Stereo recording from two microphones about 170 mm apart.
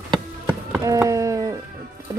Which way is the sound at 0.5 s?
10° right (ahead or behind).